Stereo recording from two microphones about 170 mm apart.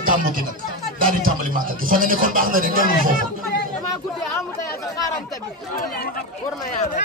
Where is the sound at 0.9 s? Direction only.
55° right (ahead or behind).